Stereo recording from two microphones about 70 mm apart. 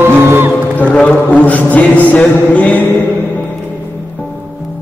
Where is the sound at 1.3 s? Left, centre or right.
Left.